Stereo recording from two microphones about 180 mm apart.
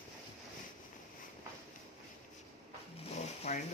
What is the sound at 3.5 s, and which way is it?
Speech, 40° left (ahead or behind).